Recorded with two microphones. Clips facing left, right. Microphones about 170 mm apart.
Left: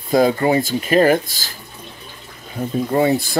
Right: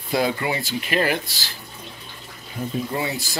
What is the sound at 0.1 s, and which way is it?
Speech, 40° left (ahead or behind).